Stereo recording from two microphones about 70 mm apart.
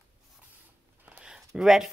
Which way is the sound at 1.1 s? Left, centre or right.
Centre.